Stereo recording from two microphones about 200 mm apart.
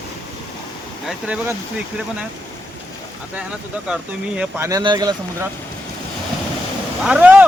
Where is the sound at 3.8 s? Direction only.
5° right (ahead or behind).